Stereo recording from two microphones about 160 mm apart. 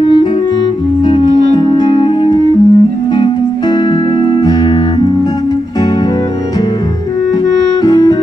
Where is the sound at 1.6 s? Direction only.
25° left (ahead or behind).